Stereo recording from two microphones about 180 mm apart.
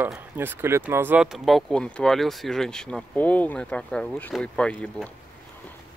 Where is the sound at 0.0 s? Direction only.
10° right (ahead or behind); by 5.1 s 5° left (ahead or behind).